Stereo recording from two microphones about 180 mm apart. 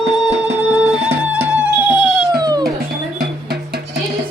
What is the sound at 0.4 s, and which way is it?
Music, 5° right (ahead or behind).